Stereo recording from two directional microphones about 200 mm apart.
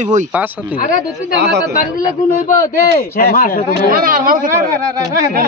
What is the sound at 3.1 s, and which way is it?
Speech, 50° left (ahead or behind).